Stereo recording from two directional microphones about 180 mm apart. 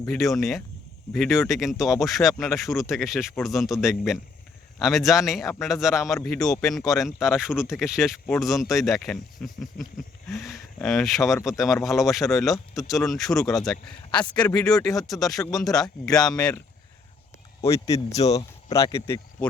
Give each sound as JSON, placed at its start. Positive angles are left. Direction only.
{"t": 0.1, "sound": "speech", "side_deg": 0}
{"t": 14.5, "sound": "speech", "side_deg": 20}
{"t": 14.8, "sound": "speech", "side_deg": 0}
{"t": 16.0, "sound": "speech", "side_deg": 20}
{"t": 16.4, "sound": "speech", "side_deg": 5}
{"t": 17.7, "sound": "speech", "side_deg": 20}
{"t": 18.1, "sound": "speech", "side_deg": 35}
{"t": 18.7, "sound": "speech", "side_deg": 15}